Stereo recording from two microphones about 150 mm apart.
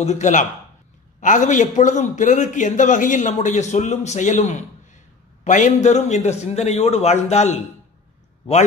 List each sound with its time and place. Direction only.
0.0 s a man's voice: 55° left (ahead or behind)